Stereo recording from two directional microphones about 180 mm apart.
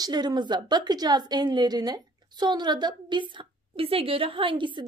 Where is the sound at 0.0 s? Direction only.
25° right (ahead or behind).